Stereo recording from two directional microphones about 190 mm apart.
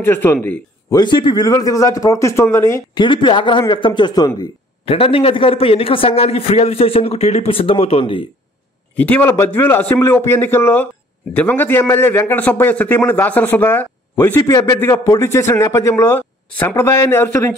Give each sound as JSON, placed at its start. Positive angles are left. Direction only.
{"t": 0.0, "sound": "a man's voice", "side_deg": 10}
{"t": 8.9, "sound": "a man's voice", "side_deg": 10}